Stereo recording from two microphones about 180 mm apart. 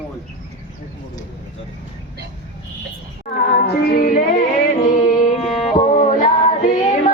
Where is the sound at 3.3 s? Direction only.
55° left (ahead or behind).